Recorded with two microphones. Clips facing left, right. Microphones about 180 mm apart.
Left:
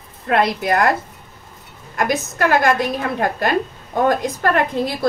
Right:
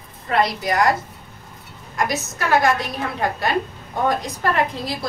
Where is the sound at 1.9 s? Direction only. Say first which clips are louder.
Left 4 dB; 55° left (ahead or behind).